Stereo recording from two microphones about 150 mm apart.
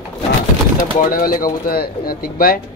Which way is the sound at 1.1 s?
75° left (ahead or behind).